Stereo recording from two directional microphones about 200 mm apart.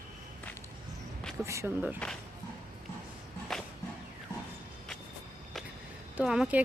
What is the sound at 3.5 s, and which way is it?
Whip, centre (ahead or behind).